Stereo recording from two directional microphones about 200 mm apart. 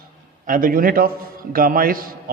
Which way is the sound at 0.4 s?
45° right (ahead or behind).